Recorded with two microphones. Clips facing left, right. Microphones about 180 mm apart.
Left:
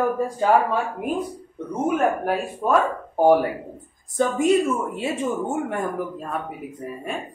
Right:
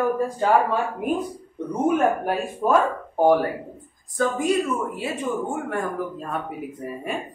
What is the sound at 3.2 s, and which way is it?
Speech, 10° left (ahead or behind).